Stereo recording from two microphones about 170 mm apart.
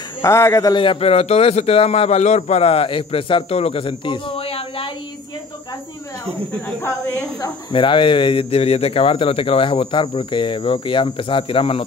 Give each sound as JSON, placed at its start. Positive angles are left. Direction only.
{"t": 0.2, "sound": "a woman's voice", "side_deg": 15}
{"t": 6.8, "sound": "a woman's voice", "side_deg": 20}